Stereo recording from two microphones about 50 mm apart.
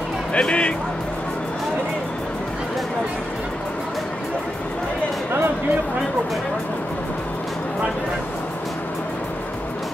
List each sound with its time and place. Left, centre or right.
0.3 s speech: left